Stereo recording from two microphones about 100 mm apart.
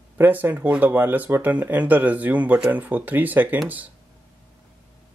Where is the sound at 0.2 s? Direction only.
20° right (ahead or behind).